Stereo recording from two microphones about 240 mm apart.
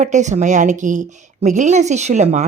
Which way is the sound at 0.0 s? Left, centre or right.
Right.